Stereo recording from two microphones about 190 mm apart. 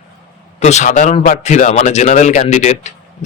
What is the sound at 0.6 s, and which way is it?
Speech, 40° left (ahead or behind).